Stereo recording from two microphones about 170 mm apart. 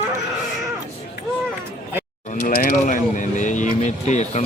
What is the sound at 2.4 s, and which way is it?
Speech, 50° left (ahead or behind).